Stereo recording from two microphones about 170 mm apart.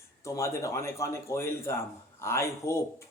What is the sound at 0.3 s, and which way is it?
A man's voice, 15° left (ahead or behind).